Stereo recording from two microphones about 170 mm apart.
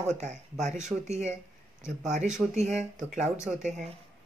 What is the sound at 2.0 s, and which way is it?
Speech, 45° right (ahead or behind).